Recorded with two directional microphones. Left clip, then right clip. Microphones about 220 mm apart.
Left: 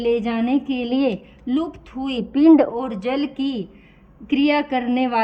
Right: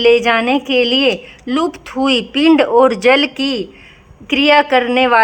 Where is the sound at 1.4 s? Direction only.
5° left (ahead or behind).